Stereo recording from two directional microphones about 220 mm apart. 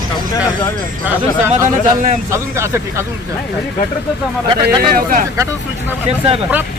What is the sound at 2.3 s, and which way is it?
Speech, 10° right (ahead or behind).